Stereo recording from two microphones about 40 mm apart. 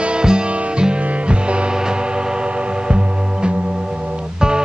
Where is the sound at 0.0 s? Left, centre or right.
Right.